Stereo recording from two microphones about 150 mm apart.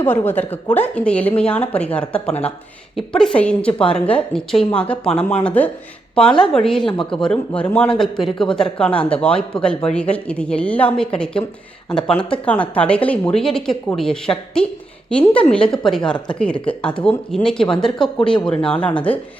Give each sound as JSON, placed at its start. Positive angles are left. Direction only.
{"t": 0.0, "sound": "speech", "side_deg": 15}
{"t": 6.8, "sound": "speech", "side_deg": 35}
{"t": 7.1, "sound": "speech", "side_deg": 5}